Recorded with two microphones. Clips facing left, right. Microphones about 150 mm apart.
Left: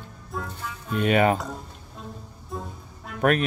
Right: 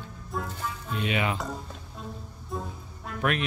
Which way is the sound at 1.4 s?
Centre (ahead or behind).